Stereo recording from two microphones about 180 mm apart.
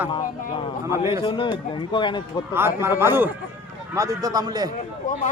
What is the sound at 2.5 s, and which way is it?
A man's voice, 15° right (ahead or behind).